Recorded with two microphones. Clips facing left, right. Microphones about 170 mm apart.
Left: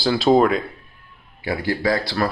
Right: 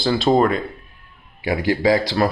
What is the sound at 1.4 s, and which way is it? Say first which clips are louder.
Speech: right 4 dB; 20° right (ahead or behind).